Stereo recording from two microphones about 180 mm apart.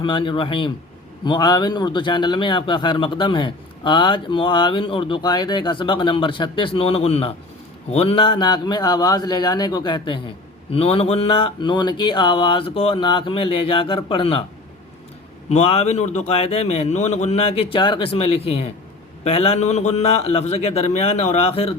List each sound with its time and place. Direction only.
0.0 s a man's voice: 25° left (ahead or behind)
15.4 s a man's voice: 35° left (ahead or behind)